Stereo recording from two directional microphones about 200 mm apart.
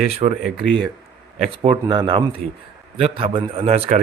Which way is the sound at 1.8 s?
20° right (ahead or behind).